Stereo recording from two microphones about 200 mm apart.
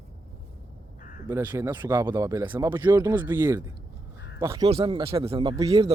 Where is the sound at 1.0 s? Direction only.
45° left (ahead or behind).